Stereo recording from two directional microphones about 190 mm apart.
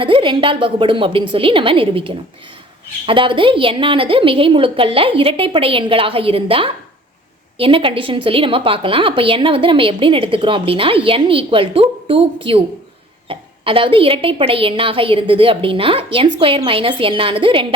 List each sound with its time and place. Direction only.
0.0 s a woman's voice: 25° right (ahead or behind)